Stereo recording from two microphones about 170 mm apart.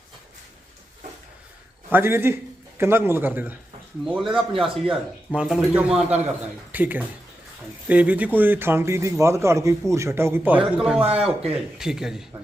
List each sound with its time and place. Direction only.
1.9 s a man's voice: 15° right (ahead or behind)
11.0 s speech: 35° right (ahead or behind)
11.5 s speech: 5° right (ahead or behind)